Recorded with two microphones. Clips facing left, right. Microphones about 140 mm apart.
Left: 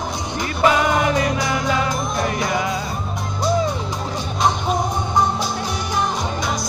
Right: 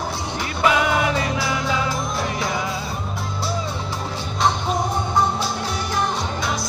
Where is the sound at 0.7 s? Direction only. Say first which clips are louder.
Left 2 dB; 45° left (ahead or behind).